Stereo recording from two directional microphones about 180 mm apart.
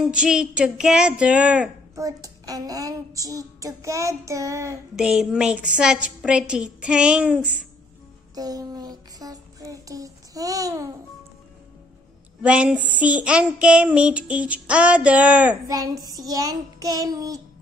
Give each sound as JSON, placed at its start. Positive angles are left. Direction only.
{"t": 0.1, "sound": "a woman's voice", "side_deg": -5}
{"t": 2.0, "sound": "child singing", "side_deg": -20}
{"t": 4.9, "sound": "a woman's voice", "side_deg": -5}
{"t": 8.4, "sound": "child singing", "side_deg": -20}
{"t": 12.4, "sound": "child singing", "side_deg": -5}
{"t": 15.7, "sound": "child singing", "side_deg": -20}